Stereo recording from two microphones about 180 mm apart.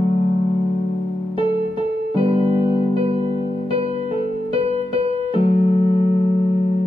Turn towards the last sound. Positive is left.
turn(degrees=30)  # may be behind; listen again after turning